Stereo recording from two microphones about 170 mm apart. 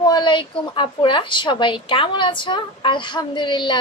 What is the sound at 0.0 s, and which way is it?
A woman's voice, 25° left (ahead or behind).